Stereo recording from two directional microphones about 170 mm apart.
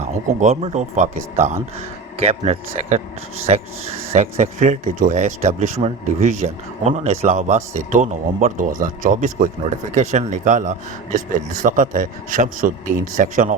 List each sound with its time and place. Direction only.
0.1 s speech: 45° right (ahead or behind)